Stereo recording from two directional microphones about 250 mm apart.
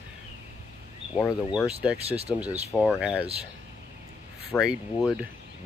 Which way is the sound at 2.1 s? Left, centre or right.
Right.